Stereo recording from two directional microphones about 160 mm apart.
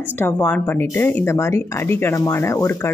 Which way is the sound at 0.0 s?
10° left (ahead or behind).